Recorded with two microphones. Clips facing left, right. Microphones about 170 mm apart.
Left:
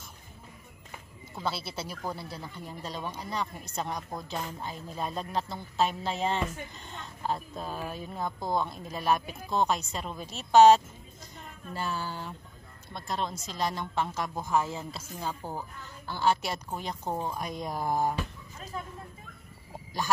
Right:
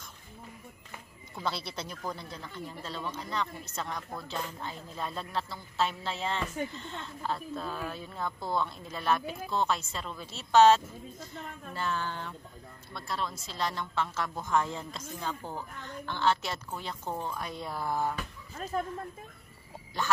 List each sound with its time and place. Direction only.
1.4 s speech: 5° left (ahead or behind)
12.9 s speech: 20° left (ahead or behind)
20.0 s speech: 10° left (ahead or behind)